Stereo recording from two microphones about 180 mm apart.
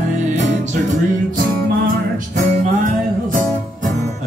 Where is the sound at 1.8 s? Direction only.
45° right (ahead or behind).